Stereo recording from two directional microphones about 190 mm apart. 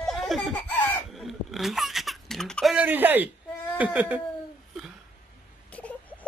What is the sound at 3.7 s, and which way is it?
Speech, 5° right (ahead or behind).